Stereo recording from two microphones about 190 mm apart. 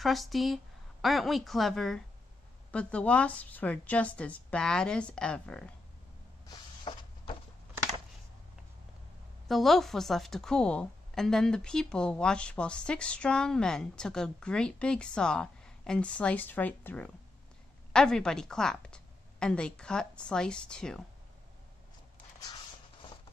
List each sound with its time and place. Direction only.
0.0 s a woman's voice: centre (ahead or behind)
6.4 s a sound: 25° left (ahead or behind)
9.5 s a woman's voice: centre (ahead or behind)